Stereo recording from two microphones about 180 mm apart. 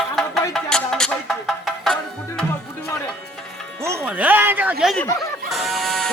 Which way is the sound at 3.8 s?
15° right (ahead or behind).